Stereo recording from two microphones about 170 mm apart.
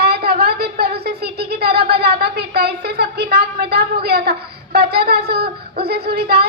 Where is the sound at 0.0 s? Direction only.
70° right (ahead or behind).